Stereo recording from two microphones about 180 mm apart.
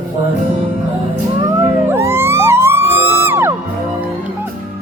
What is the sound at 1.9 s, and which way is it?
Music, 15° right (ahead or behind).